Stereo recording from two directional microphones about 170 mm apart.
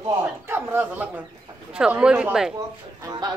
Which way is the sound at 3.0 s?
25° right (ahead or behind).